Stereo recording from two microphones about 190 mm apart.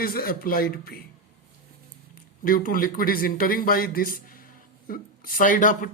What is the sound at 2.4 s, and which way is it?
Speech, 50° left (ahead or behind).